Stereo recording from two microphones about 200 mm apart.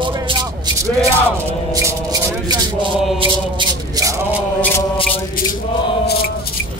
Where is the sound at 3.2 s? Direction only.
25° right (ahead or behind).